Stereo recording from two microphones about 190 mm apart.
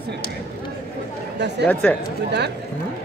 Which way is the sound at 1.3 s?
65° right (ahead or behind).